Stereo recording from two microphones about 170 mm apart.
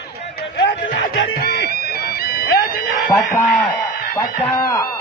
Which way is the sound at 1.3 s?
65° left (ahead or behind).